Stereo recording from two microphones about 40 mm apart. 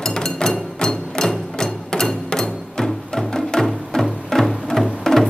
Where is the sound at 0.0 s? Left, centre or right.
Centre.